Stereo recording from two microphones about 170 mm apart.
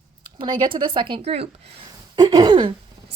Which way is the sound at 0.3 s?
30° right (ahead or behind).